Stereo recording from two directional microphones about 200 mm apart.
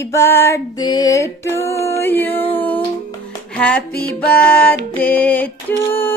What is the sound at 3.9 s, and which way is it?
Music, 50° left (ahead or behind).